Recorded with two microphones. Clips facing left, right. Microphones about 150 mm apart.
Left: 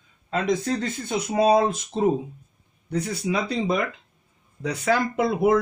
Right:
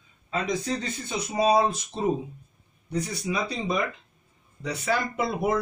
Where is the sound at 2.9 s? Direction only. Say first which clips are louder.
Left 3 dB; 75° left (ahead or behind).